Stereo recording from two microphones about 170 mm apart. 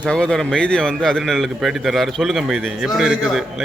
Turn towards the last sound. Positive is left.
turn(degrees=-5)  # may be behind; listen again after turning